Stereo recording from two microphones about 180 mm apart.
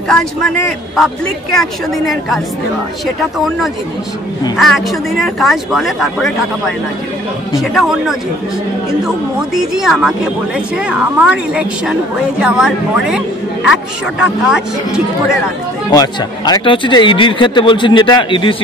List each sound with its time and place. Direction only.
0.1 s a woman's voice: 5° left (ahead or behind)
7.5 s a woman's voice: centre (ahead or behind)
9.8 s a woman's voice: centre (ahead or behind)
14.2 s a woman's voice: 5° right (ahead or behind)
15.9 s speech: 20° left (ahead or behind)